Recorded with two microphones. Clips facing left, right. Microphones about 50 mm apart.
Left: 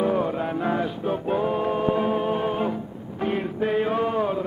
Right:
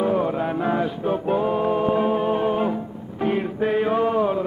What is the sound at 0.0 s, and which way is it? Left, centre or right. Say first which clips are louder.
Music: right 2 dB; centre.